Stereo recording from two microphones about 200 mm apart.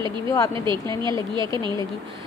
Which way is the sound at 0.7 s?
25° right (ahead or behind).